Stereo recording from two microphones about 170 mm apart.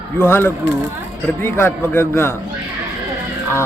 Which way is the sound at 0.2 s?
15° left (ahead or behind).